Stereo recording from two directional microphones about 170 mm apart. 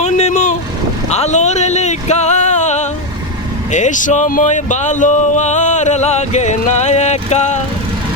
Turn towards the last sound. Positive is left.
turn(degrees=40)  # may be behind; listen again after turning